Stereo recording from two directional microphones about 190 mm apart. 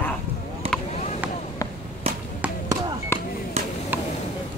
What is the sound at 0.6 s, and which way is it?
Vehicle, 30° right (ahead or behind).